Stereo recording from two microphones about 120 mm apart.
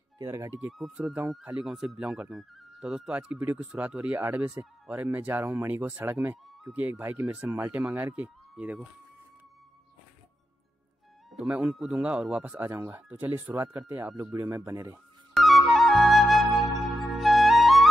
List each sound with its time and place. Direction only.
0.2 s speech: 25° right (ahead or behind)
0.7 s speech: centre (ahead or behind)
11.3 s speech: 10° right (ahead or behind)
15.3 s flute: centre (ahead or behind)